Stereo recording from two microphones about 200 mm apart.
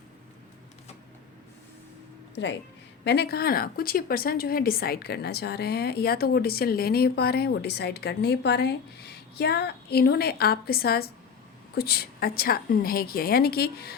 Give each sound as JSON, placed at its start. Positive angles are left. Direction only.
{"t": 2.3, "sound": "speech", "side_deg": 65}